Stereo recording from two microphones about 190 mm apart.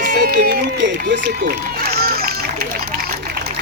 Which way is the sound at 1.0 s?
55° right (ahead or behind).